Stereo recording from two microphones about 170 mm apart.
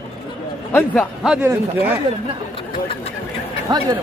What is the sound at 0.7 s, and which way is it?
Speech, 10° left (ahead or behind).